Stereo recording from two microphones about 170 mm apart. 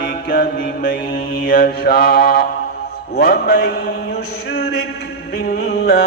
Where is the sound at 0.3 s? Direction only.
50° left (ahead or behind).